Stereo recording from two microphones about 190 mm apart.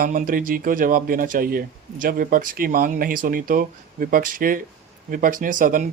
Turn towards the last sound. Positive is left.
turn(degrees=-45)  # may be behind; listen again after turning